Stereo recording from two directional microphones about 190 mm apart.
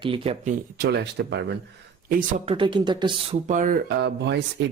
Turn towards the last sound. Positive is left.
turn(degrees=-60)  # may be behind; listen again after turning